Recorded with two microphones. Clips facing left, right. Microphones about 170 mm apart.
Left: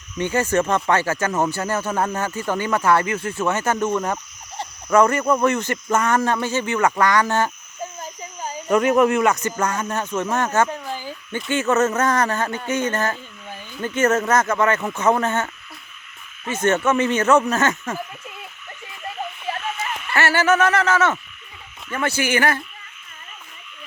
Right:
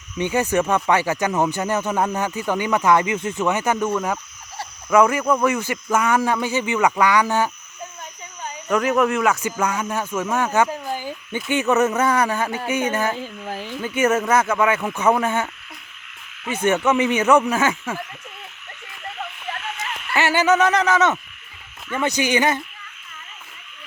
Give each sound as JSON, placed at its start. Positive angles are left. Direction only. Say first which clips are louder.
{"t": 0.2, "sound": "speech", "louder": "even", "side_deg": -15}
{"t": 5.2, "sound": "speech", "louder": "even", "side_deg": 10}
{"t": 5.5, "sound": "speech", "louder": "left 1 dB", "side_deg": -10}
{"t": 8.6, "sound": "speech", "louder": "left 3 dB", "side_deg": 0}
{"t": 13.5, "sound": "a sound", "louder": "right 6 dB", "side_deg": -90}
{"t": 13.8, "sound": "speech", "louder": "left 1 dB", "side_deg": -10}
{"t": 20.1, "sound": "speech", "louder": "right 1 dB", "side_deg": -15}